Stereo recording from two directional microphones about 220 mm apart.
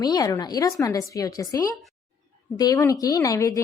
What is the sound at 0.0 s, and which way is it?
Speech, 15° left (ahead or behind).